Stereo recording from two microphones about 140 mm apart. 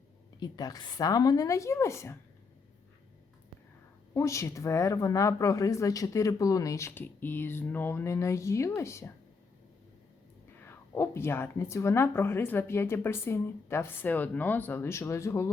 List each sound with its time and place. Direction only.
0.3 s speech: 30° left (ahead or behind)
4.1 s speech: 20° left (ahead or behind)
10.6 s speech: 20° left (ahead or behind)